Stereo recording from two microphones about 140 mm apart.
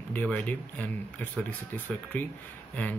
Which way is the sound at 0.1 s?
10° left (ahead or behind).